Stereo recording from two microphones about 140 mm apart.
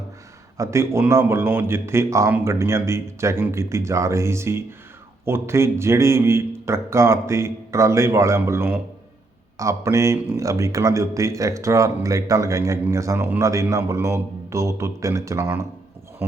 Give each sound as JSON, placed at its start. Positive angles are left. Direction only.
{"t": 0.5, "sound": "speech", "side_deg": -20}